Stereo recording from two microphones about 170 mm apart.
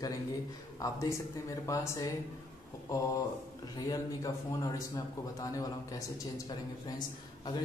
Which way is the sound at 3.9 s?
20° left (ahead or behind).